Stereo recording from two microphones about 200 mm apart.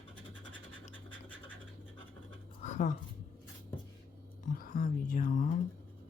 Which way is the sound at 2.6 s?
40° left (ahead or behind).